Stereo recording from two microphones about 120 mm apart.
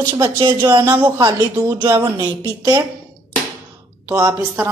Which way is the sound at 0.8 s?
25° right (ahead or behind).